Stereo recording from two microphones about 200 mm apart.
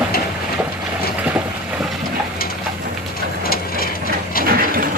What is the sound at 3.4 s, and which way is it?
Vehicle, 50° left (ahead or behind).